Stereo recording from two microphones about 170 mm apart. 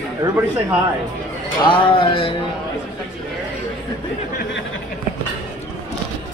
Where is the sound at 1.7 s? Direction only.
30° left (ahead or behind).